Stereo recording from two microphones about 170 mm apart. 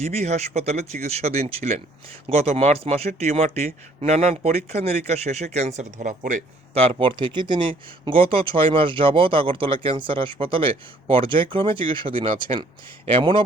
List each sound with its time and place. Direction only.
0.0 s speech: 40° right (ahead or behind)
7.0 s speech: 30° right (ahead or behind)